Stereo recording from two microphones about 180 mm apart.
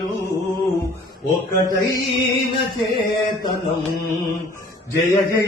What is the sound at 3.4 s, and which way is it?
Mantra, 60° left (ahead or behind).